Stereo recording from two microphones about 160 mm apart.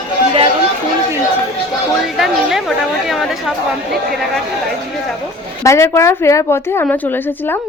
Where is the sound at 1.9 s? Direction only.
Centre (ahead or behind).